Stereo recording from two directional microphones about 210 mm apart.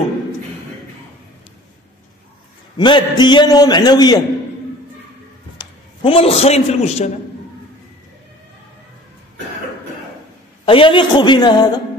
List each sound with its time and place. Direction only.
2.8 s a man's voice: 20° left (ahead or behind)
5.6 s a man's voice: 25° left (ahead or behind)
10.6 s a man's voice: 25° left (ahead or behind)